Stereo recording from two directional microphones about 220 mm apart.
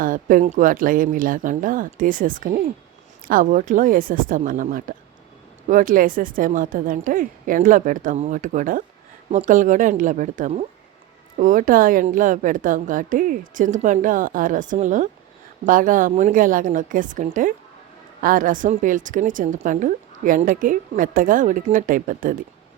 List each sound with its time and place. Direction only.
0.0 s a woman's voice: 35° right (ahead or behind)